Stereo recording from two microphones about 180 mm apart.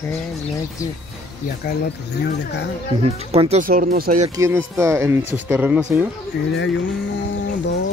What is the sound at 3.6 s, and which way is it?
Speech, 50° right (ahead or behind).